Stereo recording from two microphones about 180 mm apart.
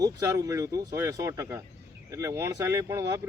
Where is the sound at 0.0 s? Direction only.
20° right (ahead or behind).